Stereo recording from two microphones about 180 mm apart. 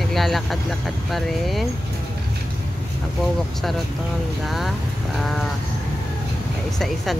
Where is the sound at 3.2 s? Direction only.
Centre (ahead or behind).